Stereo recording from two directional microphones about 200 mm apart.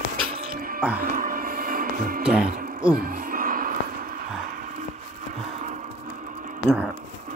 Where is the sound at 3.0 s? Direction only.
45° right (ahead or behind).